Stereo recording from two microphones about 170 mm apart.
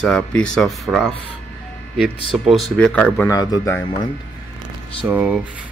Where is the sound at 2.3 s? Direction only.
Centre (ahead or behind).